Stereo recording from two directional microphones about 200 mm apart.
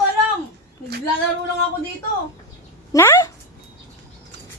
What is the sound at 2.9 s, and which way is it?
Speech, 15° left (ahead or behind).